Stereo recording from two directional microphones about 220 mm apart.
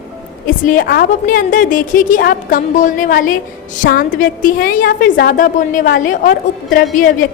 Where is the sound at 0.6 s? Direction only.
40° left (ahead or behind).